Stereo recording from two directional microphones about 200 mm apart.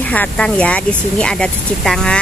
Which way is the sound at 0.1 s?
5° left (ahead or behind).